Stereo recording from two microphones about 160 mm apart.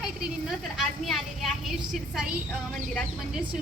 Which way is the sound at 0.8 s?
Centre (ahead or behind).